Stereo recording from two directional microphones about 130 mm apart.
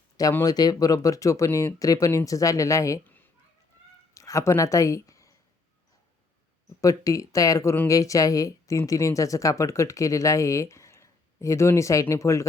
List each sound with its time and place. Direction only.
0.2 s speech: 25° left (ahead or behind)
4.1 s speech: 25° left (ahead or behind)
6.8 s speech: 25° left (ahead or behind)